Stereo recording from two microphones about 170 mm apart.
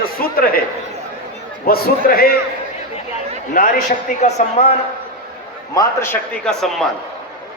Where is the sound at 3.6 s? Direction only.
60° left (ahead or behind).